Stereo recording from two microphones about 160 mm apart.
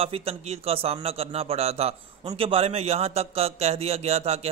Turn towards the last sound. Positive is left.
turn(degrees=-40)  # may be behind; listen again after turning